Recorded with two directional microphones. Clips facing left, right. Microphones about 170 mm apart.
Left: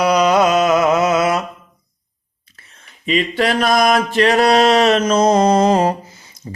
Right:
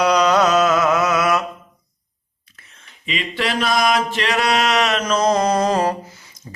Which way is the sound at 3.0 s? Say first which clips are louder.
Left 7 dB; 40° left (ahead or behind).